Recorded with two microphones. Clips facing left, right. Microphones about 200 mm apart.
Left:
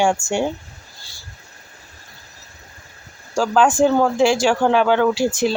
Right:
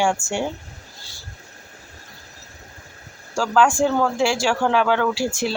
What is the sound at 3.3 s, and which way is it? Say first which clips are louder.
Speech: left 2 dB; 20° left (ahead or behind).